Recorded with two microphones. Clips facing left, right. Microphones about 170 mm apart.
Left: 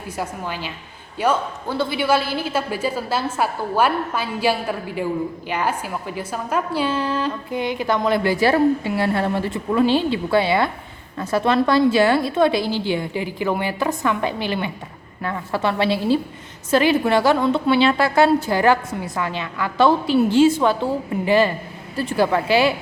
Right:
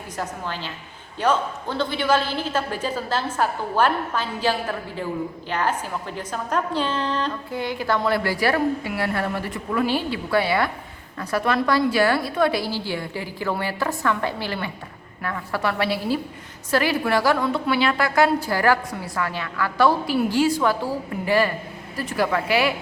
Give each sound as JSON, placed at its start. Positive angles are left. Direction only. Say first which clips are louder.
{"t": 0.2, "sound": "a woman's voice", "louder": "left 2 dB", "side_deg": 10}
{"t": 7.5, "sound": "a woman's voice", "louder": "left 3 dB", "side_deg": 20}